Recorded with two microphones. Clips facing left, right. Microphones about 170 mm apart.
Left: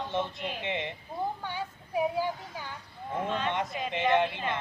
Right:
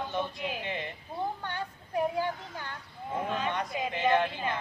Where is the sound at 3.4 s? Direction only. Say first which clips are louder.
Even; 20° left (ahead or behind).